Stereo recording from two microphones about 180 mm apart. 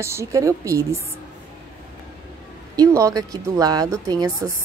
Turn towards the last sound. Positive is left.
turn(degrees=-20)  # may be behind; listen again after turning